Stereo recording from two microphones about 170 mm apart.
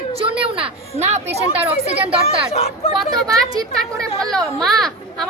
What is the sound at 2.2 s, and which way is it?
Speech, 40° left (ahead or behind).